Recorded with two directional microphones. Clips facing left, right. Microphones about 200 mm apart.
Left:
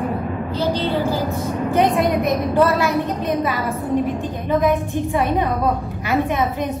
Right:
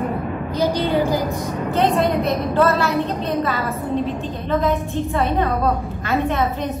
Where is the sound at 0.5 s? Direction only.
15° right (ahead or behind).